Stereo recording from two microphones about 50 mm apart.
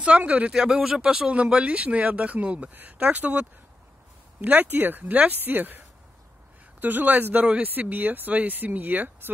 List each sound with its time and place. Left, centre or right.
0.0 s speech: right
0.5 s speech: centre
1.3 s a woman's voice: right
6.8 s a woman's voice: right